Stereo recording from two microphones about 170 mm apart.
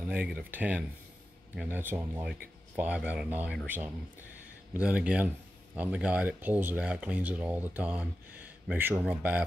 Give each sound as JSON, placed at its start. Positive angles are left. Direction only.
{"t": 0.0, "sound": "speech", "side_deg": -10}